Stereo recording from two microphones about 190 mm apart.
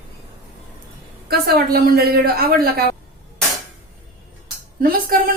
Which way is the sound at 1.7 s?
50° right (ahead or behind).